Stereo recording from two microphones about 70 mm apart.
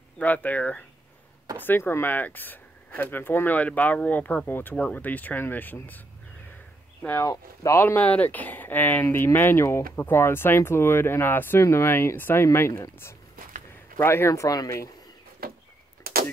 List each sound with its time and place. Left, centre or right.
0.2 s speech: left
7.2 s speech: left
7.8 s speech: left
13.9 s speech: left